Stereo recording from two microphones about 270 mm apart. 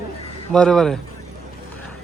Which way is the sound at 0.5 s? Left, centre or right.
Centre.